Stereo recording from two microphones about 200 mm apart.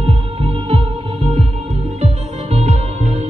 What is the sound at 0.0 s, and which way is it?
Music, 25° right (ahead or behind).